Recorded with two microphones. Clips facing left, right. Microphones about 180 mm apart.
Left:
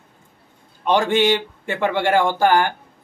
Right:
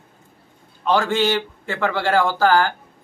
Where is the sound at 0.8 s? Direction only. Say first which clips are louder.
Left 2 dB; 20° left (ahead or behind).